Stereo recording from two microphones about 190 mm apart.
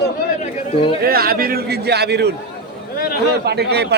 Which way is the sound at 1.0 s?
55° right (ahead or behind).